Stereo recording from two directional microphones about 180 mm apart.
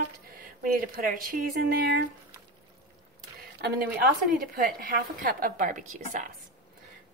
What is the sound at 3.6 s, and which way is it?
A woman's voice, 60° right (ahead or behind).